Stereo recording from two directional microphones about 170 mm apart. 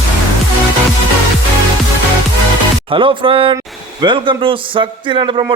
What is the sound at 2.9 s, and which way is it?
A man's voice, 30° right (ahead or behind).